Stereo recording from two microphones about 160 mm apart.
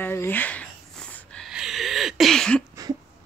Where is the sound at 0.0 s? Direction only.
15° left (ahead or behind).